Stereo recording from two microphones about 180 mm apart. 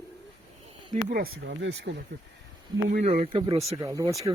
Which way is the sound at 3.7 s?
20° right (ahead or behind).